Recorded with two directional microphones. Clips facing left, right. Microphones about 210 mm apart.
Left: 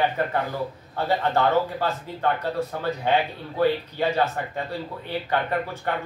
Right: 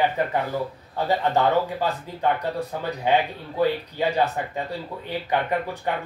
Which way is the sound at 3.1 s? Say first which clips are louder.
Right 3 dB; 15° right (ahead or behind).